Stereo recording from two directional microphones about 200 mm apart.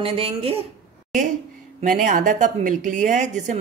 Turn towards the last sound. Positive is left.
turn(degrees=-40)  # may be behind; listen again after turning